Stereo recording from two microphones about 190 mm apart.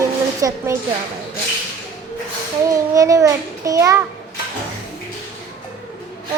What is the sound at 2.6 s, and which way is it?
Child singing, 15° right (ahead or behind).